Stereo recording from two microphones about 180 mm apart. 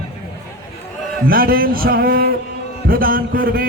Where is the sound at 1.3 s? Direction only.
55° right (ahead or behind).